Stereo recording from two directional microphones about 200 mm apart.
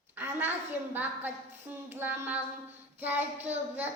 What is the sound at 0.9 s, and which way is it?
A woman's voice, 10° right (ahead or behind).